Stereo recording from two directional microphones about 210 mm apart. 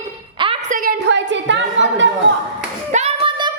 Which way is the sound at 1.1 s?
60° right (ahead or behind).